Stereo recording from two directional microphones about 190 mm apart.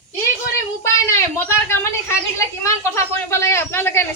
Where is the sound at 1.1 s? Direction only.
15° left (ahead or behind).